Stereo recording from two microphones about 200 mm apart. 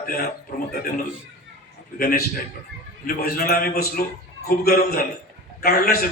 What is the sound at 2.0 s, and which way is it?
A man's voice, 50° left (ahead or behind).